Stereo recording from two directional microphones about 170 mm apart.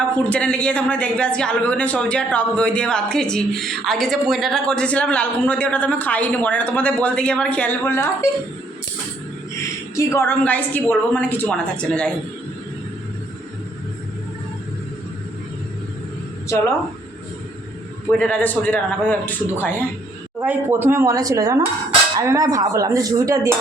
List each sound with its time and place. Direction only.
0.3 s speech: 5° left (ahead or behind)
9.9 s speech: 15° left (ahead or behind)
18.2 s speech: 5° left (ahead or behind)
20.4 s speech: 10° right (ahead or behind)